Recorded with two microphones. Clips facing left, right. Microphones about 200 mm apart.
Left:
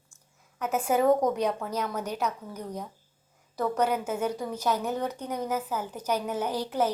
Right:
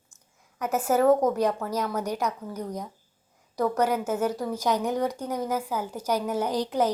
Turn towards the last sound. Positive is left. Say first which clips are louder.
# right 3 dB
turn(degrees=-15)  # may be behind; listen again after turning